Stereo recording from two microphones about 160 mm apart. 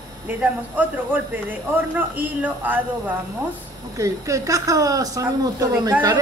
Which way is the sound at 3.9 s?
20° right (ahead or behind).